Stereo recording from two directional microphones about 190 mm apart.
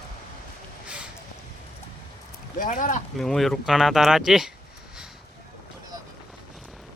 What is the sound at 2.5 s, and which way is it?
Speech, 45° left (ahead or behind).